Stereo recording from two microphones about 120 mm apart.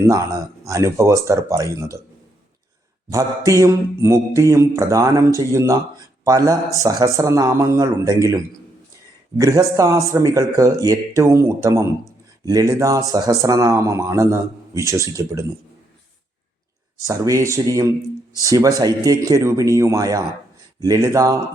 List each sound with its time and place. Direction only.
0.1 s speech: 25° right (ahead or behind)
3.1 s speech: 30° right (ahead or behind)
9.4 s speech: 25° right (ahead or behind)
17.0 s speech: 30° right (ahead or behind)